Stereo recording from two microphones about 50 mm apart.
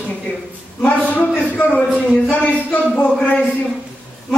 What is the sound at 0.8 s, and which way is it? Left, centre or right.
Speech, left.